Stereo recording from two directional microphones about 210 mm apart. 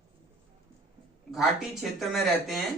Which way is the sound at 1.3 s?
Centre (ahead or behind).